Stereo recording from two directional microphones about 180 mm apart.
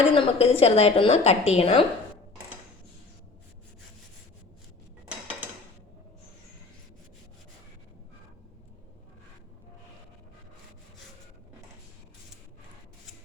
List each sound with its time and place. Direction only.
0.1 s a woman's voice: 30° left (ahead or behind)